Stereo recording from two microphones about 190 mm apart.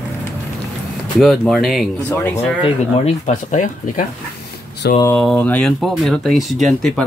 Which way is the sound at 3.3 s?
40° left (ahead or behind).